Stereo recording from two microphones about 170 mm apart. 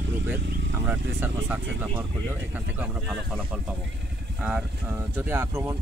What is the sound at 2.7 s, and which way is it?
Speech, 5° right (ahead or behind).